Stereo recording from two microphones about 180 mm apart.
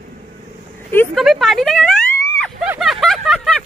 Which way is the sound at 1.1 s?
Centre (ahead or behind).